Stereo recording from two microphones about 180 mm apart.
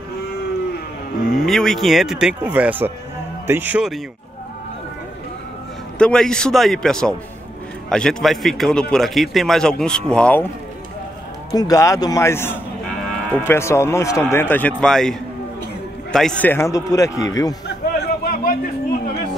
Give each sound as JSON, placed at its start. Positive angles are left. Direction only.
{"t": 1.4, "sound": "speech", "side_deg": 0}
{"t": 5.9, "sound": "speech", "side_deg": 5}
{"t": 11.5, "sound": "a man's voice", "side_deg": 20}
{"t": 17.6, "sound": "a sound", "side_deg": 60}